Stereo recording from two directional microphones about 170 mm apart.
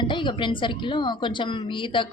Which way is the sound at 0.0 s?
30° left (ahead or behind).